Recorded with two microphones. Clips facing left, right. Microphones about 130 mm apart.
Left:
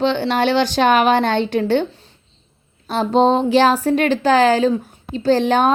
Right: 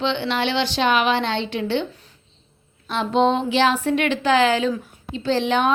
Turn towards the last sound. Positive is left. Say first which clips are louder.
# left 5 dB
turn(degrees=40)  # may be behind; listen again after turning